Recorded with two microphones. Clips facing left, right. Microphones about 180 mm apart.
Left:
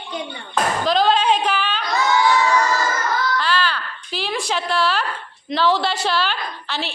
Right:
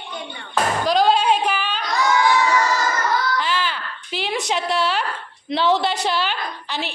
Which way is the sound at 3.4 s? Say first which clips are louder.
Left 2 dB; 20° right (ahead or behind).